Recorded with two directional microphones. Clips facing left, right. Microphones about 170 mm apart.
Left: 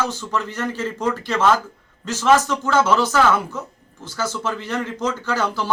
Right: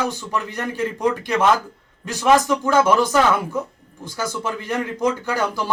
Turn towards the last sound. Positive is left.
turn(degrees=-10)  # may be behind; listen again after turning